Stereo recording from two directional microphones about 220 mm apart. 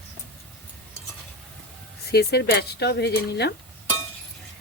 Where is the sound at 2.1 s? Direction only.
45° left (ahead or behind).